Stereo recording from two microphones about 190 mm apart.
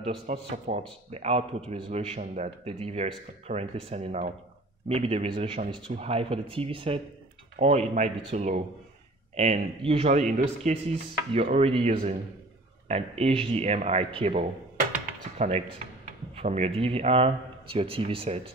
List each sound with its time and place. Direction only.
0.0 s speech: 35° right (ahead or behind)
10.3 s speech: 40° right (ahead or behind)